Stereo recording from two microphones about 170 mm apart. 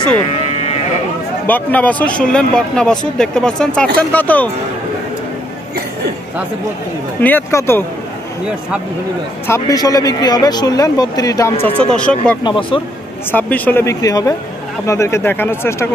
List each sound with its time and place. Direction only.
0.5 s livestock: 40° left (ahead or behind)
1.5 s speech: 10° left (ahead or behind)
7.2 s speech: 10° left (ahead or behind)
9.5 s speech: 20° left (ahead or behind)
11.6 s speech: 5° left (ahead or behind)
12.4 s speech: 30° left (ahead or behind)
13.3 s speech: 10° left (ahead or behind)